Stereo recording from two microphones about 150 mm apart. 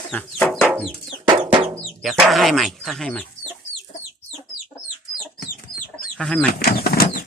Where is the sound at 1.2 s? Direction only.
30° right (ahead or behind).